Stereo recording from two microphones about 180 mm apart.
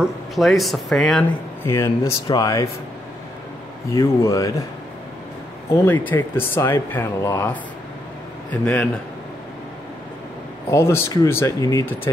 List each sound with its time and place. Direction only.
0.0 s speech: centre (ahead or behind)
1.7 s speech: 15° left (ahead or behind)
3.9 s speech: 20° left (ahead or behind)
5.9 s speech: 10° left (ahead or behind)
10.7 s speech: 15° left (ahead or behind)